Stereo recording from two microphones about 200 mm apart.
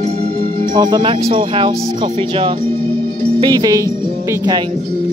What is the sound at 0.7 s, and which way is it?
Speech, 20° right (ahead or behind).